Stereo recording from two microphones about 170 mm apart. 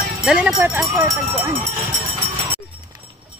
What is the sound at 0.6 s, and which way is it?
Speech, 15° right (ahead or behind).